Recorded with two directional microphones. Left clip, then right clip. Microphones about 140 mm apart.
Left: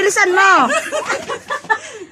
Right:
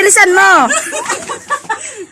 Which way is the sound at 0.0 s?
55° right (ahead or behind).